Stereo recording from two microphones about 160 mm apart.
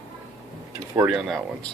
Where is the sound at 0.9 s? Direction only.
10° right (ahead or behind).